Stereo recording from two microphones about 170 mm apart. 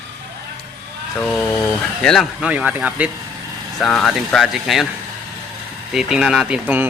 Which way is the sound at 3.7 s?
Centre (ahead or behind).